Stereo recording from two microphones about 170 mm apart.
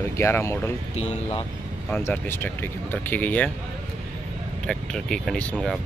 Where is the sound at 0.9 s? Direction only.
40° left (ahead or behind).